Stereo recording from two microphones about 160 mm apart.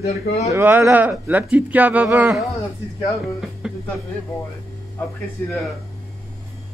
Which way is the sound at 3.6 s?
5° right (ahead or behind).